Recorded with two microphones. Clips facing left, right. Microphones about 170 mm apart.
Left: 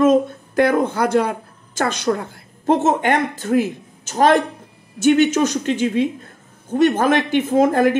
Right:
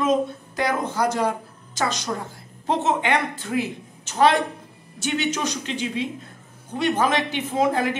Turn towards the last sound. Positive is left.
turn(degrees=50)  # may be behind; listen again after turning